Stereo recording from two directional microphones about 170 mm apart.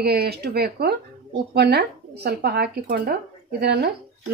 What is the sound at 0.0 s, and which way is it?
Speech, 70° right (ahead or behind).